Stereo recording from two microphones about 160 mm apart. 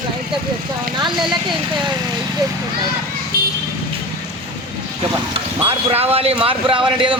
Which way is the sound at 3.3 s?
65° right (ahead or behind).